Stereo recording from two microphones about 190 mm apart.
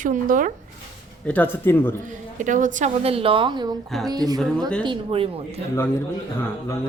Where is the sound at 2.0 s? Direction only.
40° right (ahead or behind).